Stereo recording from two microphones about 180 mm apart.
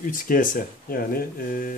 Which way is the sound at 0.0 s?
50° left (ahead or behind).